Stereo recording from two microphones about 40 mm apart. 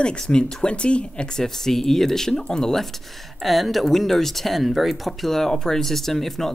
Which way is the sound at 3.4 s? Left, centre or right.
Centre.